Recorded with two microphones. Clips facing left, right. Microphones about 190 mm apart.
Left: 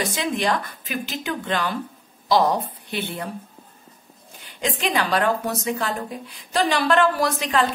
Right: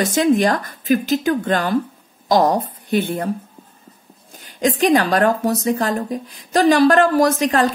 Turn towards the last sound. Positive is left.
turn(degrees=-45)  # may be behind; listen again after turning